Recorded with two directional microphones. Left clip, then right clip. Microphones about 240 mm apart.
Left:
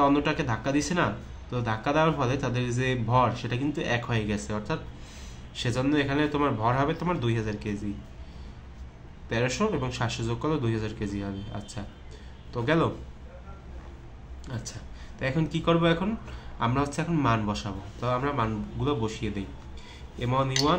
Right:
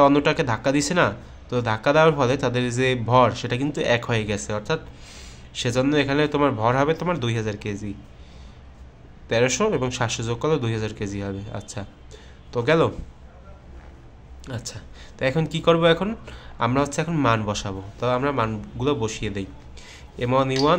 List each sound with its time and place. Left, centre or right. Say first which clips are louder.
0.0 s speech: right 7 dB; right
9.3 s speech: right 7 dB; right
14.4 s speech: right 5 dB; right